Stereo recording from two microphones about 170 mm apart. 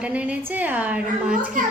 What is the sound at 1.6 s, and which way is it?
Speech, 50° right (ahead or behind).